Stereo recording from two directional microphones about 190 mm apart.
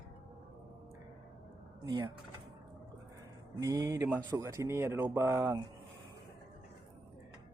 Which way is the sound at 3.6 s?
20° right (ahead or behind).